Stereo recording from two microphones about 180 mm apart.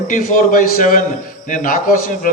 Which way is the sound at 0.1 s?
50° left (ahead or behind).